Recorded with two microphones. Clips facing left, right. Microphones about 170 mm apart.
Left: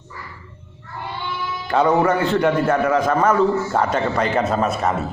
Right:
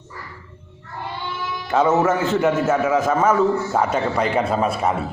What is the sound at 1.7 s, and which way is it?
A man's voice, 5° right (ahead or behind).